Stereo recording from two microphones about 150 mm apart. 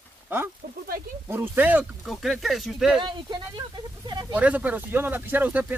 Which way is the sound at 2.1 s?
Centre (ahead or behind).